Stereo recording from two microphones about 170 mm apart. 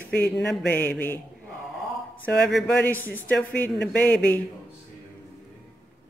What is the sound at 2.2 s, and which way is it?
Speech, 10° left (ahead or behind).